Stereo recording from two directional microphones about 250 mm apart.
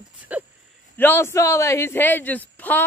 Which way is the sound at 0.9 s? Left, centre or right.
Centre.